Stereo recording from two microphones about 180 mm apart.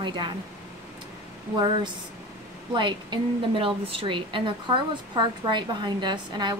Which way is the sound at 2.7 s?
25° right (ahead or behind).